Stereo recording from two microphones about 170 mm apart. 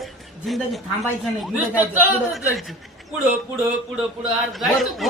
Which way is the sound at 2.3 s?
Centre (ahead or behind).